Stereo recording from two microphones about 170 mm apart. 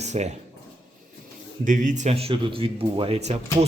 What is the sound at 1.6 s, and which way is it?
Speech, 50° right (ahead or behind).